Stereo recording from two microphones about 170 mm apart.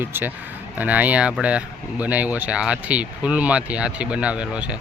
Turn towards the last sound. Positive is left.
turn(degrees=-5)  # may be behind; listen again after turning